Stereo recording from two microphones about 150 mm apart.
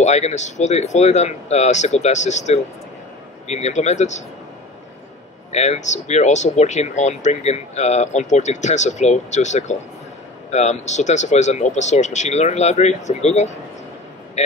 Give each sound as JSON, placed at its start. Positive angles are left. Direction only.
{"t": 0.0, "sound": "speech", "side_deg": 50}
{"t": 5.5, "sound": "speech", "side_deg": 50}